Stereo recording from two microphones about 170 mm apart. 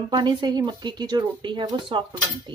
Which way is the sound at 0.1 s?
25° right (ahead or behind).